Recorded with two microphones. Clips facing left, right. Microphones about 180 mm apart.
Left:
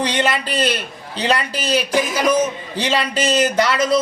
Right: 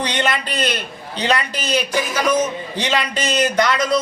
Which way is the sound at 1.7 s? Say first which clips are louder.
Left 2 dB; 10° left (ahead or behind).